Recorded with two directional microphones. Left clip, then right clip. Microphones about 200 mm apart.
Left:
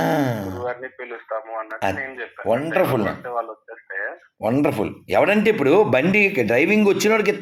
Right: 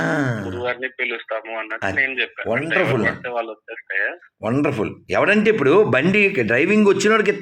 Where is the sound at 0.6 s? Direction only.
45° right (ahead or behind).